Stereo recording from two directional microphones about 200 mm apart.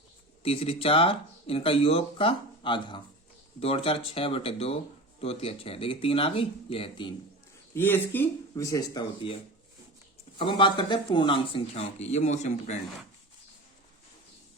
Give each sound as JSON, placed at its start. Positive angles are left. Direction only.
{"t": 0.4, "sound": "speech", "side_deg": 30}
{"t": 7.7, "sound": "speech", "side_deg": 10}
{"t": 10.3, "sound": "speech", "side_deg": 25}